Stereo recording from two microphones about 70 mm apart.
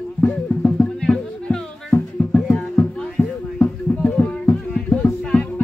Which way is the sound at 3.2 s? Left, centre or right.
Left.